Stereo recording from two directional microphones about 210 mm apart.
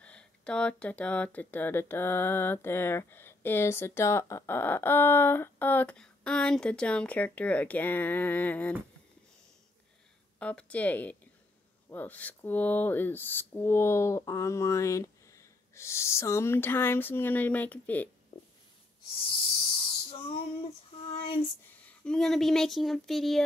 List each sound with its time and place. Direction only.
0.0 s speech: 5° left (ahead or behind)
10.4 s speech: 5° left (ahead or behind)
18.3 s a sound: 25° left (ahead or behind)
19.2 s snake: 25° left (ahead or behind)
21.1 s a sound: 25° left (ahead or behind)
21.8 s speech: 5° left (ahead or behind)